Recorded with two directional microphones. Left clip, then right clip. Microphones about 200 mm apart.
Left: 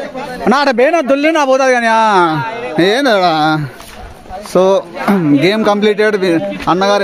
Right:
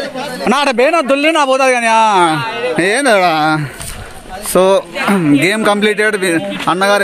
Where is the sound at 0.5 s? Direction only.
25° left (ahead or behind).